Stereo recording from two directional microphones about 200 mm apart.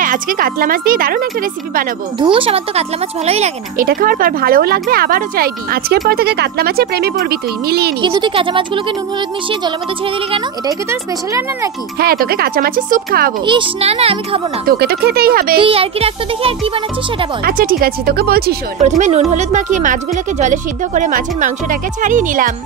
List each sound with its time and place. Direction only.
0.0 s speech: 45° right (ahead or behind)
2.1 s a child's voice: 25° right (ahead or behind); by 7.9 s 50° right (ahead or behind)
8.0 s a child's voice: 25° right (ahead or behind)
10.9 s speech: 15° right (ahead or behind)
12.0 s speech: 50° right (ahead or behind)
13.5 s a child's voice: 25° right (ahead or behind)
14.7 s speech: 50° right (ahead or behind)
15.6 s a child's voice: 30° right (ahead or behind)
17.5 s speech: 45° right (ahead or behind)
18.8 s a woman's voice: 35° right (ahead or behind)